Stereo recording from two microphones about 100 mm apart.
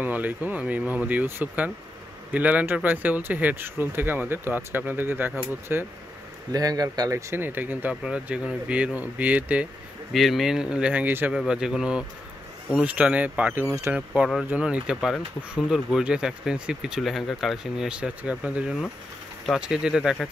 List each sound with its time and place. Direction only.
0.0 s speech: 15° right (ahead or behind)
6.5 s speech: 40° right (ahead or behind); by 9.7 s 15° right (ahead or behind)
10.1 s speech: centre (ahead or behind); by 11.3 s 20° right (ahead or behind)
11.3 s speech: 5° right (ahead or behind)
13.7 s speech: 30° right (ahead or behind)
13.9 s speech: 10° right (ahead or behind)